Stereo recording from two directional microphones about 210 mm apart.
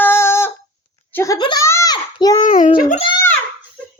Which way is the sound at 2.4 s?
40° left (ahead or behind).